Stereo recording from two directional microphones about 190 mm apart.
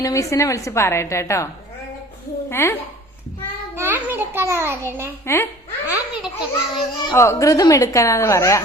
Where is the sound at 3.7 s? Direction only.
10° right (ahead or behind).